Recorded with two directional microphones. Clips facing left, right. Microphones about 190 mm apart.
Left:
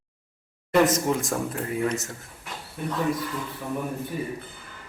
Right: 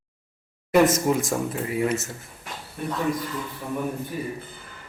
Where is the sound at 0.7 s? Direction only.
5° right (ahead or behind).